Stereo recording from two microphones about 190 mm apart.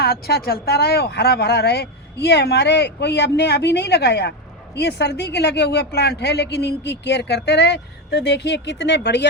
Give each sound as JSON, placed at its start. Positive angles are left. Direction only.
{"t": 0.0, "sound": "speech", "side_deg": 55}